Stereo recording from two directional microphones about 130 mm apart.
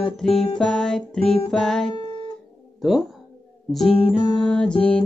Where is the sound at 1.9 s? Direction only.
35° left (ahead or behind).